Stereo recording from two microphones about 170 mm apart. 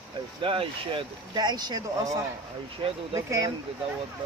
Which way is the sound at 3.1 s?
20° right (ahead or behind).